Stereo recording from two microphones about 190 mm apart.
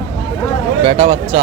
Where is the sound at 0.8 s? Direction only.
35° right (ahead or behind).